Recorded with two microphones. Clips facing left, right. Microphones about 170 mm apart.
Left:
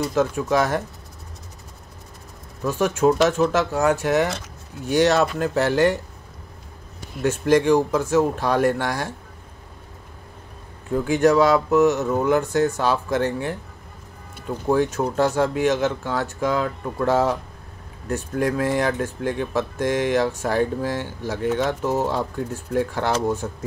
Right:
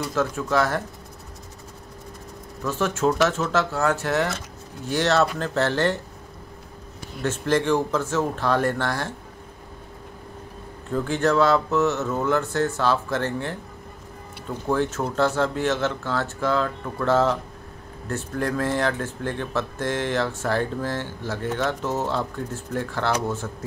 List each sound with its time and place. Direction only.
0.0 s speech: 20° left (ahead or behind)
2.6 s speech: 15° left (ahead or behind)
7.2 s speech: 15° left (ahead or behind)
11.1 s speech: 15° left (ahead or behind)
14.7 s speech: 15° left (ahead or behind)